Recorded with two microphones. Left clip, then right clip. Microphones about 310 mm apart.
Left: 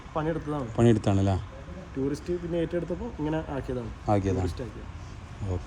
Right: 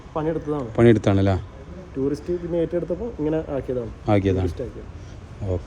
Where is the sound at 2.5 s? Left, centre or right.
Centre.